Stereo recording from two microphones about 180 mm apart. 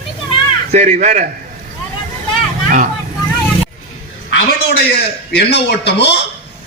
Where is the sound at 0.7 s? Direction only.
40° right (ahead or behind).